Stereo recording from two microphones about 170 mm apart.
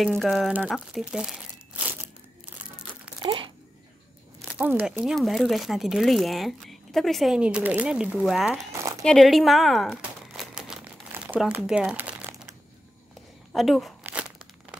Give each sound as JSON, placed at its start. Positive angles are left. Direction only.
{"t": 0.2, "sound": "speech", "side_deg": 0}
{"t": 3.2, "sound": "crumpling", "side_deg": -30}
{"t": 4.5, "sound": "speech", "side_deg": -10}
{"t": 9.0, "sound": "crumpling", "side_deg": 0}
{"t": 13.5, "sound": "speech", "side_deg": 0}